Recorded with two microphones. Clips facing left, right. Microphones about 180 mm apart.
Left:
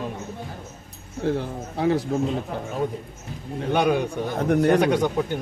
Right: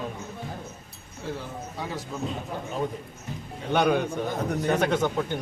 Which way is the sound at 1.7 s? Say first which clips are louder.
Left 14 dB; 70° left (ahead or behind).